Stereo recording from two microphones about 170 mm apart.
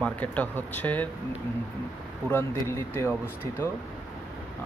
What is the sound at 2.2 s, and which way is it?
Speech, 15° left (ahead or behind).